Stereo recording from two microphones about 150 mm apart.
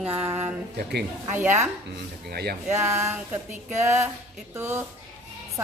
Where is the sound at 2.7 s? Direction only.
20° right (ahead or behind).